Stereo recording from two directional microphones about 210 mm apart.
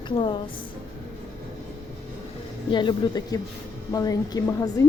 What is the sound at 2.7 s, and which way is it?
A woman's voice, 20° left (ahead or behind).